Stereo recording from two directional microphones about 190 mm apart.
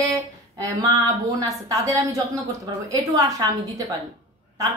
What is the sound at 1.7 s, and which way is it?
A woman's voice, 15° right (ahead or behind).